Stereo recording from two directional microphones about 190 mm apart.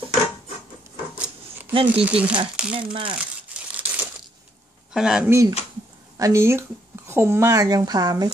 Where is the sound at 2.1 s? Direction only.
5° right (ahead or behind).